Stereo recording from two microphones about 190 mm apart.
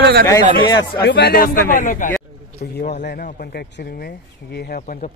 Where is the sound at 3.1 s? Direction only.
60° left (ahead or behind).